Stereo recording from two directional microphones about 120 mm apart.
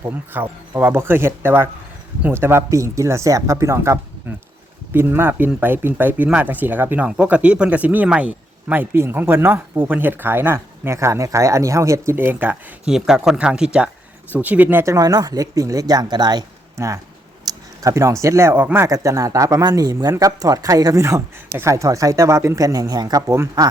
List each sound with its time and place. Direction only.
0.0 s speech: 15° right (ahead or behind)
12.9 s speech: 5° right (ahead or behind)
14.9 s speech: 30° right (ahead or behind)